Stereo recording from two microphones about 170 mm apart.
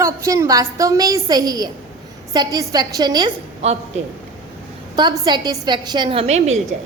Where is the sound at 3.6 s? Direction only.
40° right (ahead or behind).